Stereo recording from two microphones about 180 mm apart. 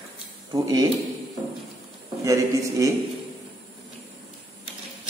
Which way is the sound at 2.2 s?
15° right (ahead or behind).